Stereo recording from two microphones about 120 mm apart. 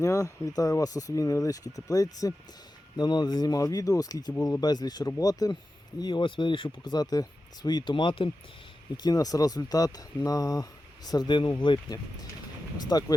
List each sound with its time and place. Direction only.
0.0 s speech: 25° left (ahead or behind); by 8.3 s 45° left (ahead or behind)
9.0 s speech: 30° left (ahead or behind)